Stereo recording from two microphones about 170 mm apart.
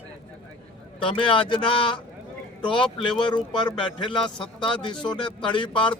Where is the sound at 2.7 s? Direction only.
30° left (ahead or behind).